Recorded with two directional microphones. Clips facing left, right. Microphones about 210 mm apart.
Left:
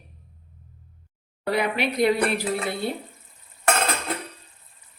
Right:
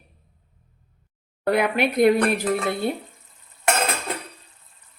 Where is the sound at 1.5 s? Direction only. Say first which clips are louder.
Right 3 dB; 50° right (ahead or behind).